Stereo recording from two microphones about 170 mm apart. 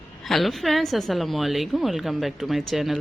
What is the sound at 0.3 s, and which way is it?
A woman's voice, centre (ahead or behind).